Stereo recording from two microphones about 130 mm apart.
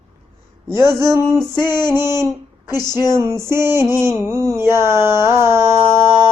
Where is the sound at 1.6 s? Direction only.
20° right (ahead or behind).